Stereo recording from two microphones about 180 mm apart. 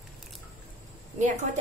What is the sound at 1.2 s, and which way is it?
Speech, 45° right (ahead or behind).